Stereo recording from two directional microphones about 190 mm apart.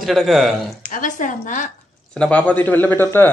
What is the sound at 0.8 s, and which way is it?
Speech, 45° left (ahead or behind).